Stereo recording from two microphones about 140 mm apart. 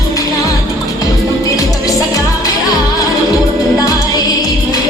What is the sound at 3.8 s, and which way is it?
Music, 25° left (ahead or behind).